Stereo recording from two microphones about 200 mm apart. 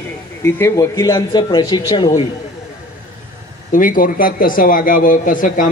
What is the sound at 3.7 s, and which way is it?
A man's voice, 45° left (ahead or behind).